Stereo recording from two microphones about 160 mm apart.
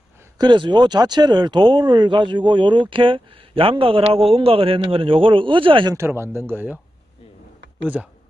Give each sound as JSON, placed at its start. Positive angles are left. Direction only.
{"t": 0.4, "sound": "speech", "side_deg": -30}
{"t": 5.9, "sound": "speech", "side_deg": -15}
{"t": 7.8, "sound": "speech", "side_deg": -10}